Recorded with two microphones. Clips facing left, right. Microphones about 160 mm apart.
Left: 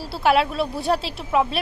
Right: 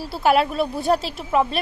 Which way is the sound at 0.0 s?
Centre (ahead or behind).